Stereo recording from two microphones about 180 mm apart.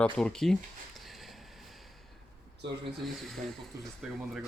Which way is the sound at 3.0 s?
Centre (ahead or behind).